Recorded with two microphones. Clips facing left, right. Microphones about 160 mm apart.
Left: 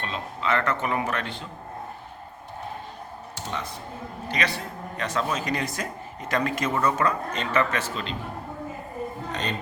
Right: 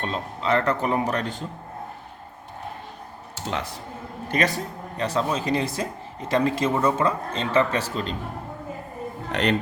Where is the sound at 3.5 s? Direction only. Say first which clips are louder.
Right 4 dB; 90° right.